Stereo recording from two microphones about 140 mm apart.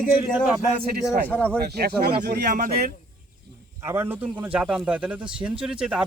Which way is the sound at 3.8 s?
20° right (ahead or behind).